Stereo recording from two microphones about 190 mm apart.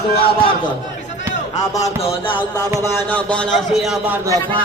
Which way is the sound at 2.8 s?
10° left (ahead or behind).